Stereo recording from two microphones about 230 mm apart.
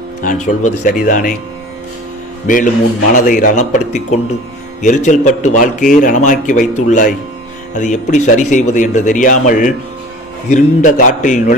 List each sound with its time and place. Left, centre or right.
0.2 s speech: left
2.4 s speech: left